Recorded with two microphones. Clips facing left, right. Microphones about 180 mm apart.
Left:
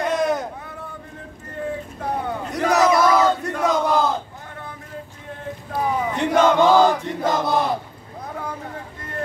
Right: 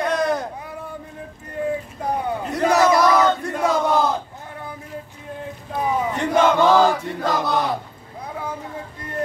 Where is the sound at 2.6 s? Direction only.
Centre (ahead or behind).